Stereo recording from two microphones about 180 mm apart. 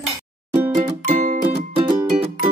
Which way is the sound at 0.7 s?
40° right (ahead or behind).